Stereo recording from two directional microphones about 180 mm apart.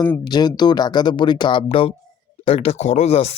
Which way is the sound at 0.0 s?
20° left (ahead or behind).